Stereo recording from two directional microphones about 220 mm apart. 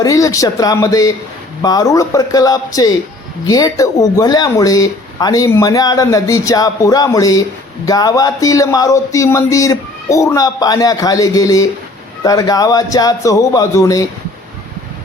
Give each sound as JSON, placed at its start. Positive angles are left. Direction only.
{"t": 0.0, "sound": "speech", "side_deg": 15}